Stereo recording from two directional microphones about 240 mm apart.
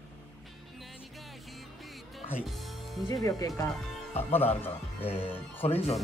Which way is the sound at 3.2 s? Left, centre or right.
Centre.